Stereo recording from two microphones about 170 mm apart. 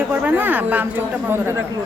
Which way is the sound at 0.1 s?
10° right (ahead or behind).